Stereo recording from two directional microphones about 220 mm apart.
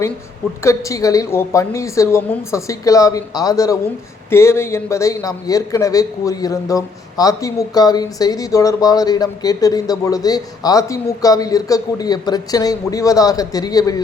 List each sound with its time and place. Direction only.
0.6 s a man's voice: 15° left (ahead or behind)